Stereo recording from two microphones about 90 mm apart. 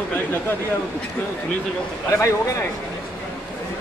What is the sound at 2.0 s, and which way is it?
Speech, 35° left (ahead or behind).